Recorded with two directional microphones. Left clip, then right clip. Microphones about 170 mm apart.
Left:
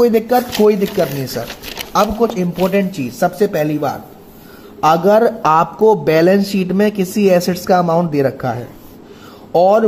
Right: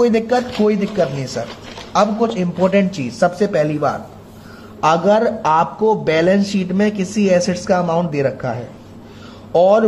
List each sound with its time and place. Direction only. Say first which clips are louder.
0.0 s speech: left 3 dB; 45° left (ahead or behind)
2.6 s speech: right 1 dB; 25° left (ahead or behind)